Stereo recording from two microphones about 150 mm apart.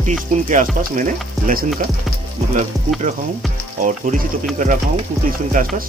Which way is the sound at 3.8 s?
60° right (ahead or behind).